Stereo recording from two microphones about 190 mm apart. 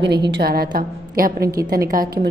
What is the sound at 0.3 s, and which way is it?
A woman's voice, 55° right (ahead or behind).